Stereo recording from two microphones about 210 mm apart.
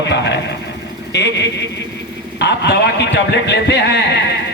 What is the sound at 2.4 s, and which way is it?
Speech, 55° left (ahead or behind).